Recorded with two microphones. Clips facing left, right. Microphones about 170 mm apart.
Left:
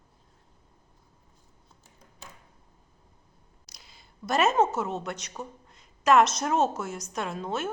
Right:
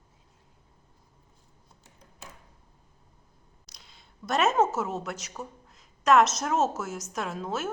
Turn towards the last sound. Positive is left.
turn(degrees=0)  # may be behind; listen again after turning